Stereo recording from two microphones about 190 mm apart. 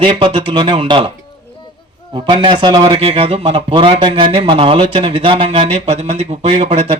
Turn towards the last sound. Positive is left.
turn(degrees=-35)  # may be behind; listen again after turning